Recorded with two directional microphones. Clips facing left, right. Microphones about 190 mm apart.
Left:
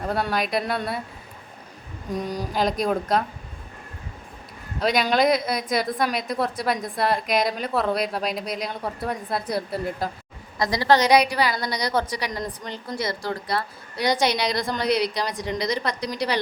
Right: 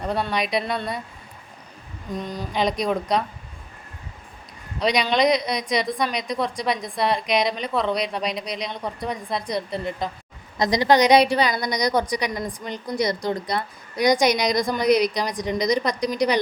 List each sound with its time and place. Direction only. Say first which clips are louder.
0.0 s a woman's voice: even; centre (ahead or behind)
2.0 s a woman's voice: left 2 dB; 10° left (ahead or behind)
4.8 s a woman's voice: even; 5° left (ahead or behind)
10.6 s a woman's voice: right 2 dB; 20° right (ahead or behind)